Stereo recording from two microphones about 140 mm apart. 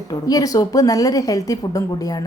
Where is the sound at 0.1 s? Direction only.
25° left (ahead or behind).